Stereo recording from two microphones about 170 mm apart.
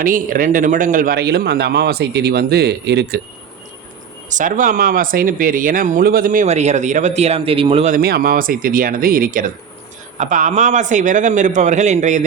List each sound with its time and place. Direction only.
0.0 s a man's voice: 55° right (ahead or behind); by 3.2 s 90° right
4.3 s speech: 50° right (ahead or behind)
7.9 s speech: 65° right (ahead or behind); by 12.2 s 45° right (ahead or behind)